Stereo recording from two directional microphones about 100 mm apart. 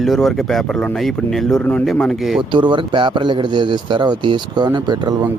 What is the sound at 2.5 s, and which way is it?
Speech, 55° right (ahead or behind).